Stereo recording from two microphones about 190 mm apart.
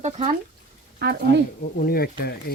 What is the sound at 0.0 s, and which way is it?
Speech, 35° right (ahead or behind).